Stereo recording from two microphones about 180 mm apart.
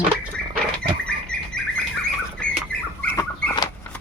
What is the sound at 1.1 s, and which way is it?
Bird, 5° left (ahead or behind).